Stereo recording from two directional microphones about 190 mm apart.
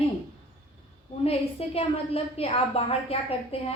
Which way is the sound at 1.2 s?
30° left (ahead or behind).